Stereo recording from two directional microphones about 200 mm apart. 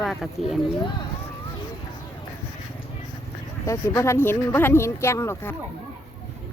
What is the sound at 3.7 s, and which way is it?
Speech, 15° left (ahead or behind).